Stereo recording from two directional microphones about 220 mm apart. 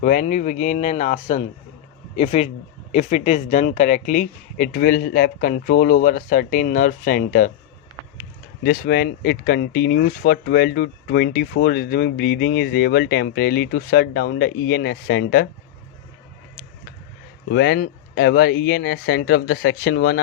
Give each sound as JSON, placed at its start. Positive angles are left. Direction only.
{"t": 0.0, "sound": "speech", "side_deg": 35}
{"t": 8.6, "sound": "speech", "side_deg": 45}
{"t": 17.5, "sound": "speech", "side_deg": 50}